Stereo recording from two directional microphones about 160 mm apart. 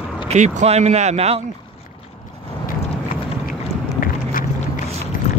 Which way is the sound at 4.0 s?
60° left (ahead or behind).